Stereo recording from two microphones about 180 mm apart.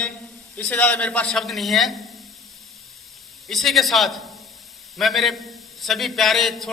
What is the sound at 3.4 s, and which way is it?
A woman's voice, centre (ahead or behind).